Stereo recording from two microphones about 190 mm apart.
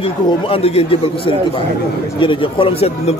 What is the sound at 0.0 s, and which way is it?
A man's voice, 30° left (ahead or behind).